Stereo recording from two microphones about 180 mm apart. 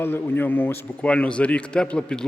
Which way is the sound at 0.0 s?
10° left (ahead or behind).